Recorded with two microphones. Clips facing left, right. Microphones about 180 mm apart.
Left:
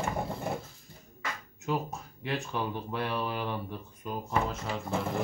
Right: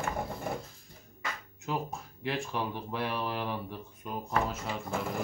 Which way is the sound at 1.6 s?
Centre (ahead or behind).